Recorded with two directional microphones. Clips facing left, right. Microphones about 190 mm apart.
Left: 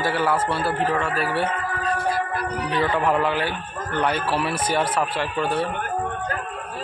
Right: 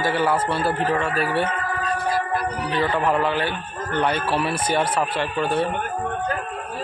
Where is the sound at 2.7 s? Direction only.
10° left (ahead or behind).